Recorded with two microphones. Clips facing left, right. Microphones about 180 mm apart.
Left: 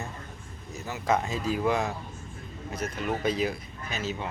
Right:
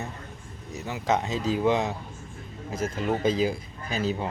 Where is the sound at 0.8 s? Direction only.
20° right (ahead or behind).